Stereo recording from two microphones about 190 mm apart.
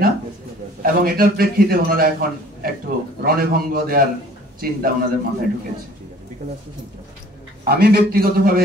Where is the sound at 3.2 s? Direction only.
50° right (ahead or behind).